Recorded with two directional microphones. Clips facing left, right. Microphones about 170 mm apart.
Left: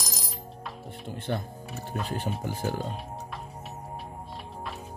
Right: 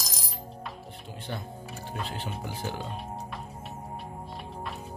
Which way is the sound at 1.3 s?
50° left (ahead or behind).